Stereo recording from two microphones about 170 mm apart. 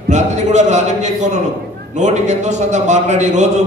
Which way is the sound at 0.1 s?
45° right (ahead or behind).